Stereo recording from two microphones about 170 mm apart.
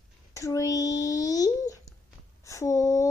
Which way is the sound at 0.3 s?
20° left (ahead or behind).